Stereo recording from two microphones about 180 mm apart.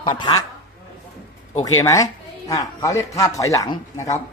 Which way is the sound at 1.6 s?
20° left (ahead or behind).